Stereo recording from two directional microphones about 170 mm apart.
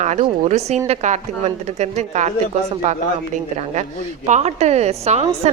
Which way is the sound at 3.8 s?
45° right (ahead or behind).